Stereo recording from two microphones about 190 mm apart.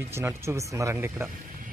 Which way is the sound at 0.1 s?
15° right (ahead or behind).